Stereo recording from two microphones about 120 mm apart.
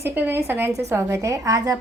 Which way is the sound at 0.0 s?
15° right (ahead or behind).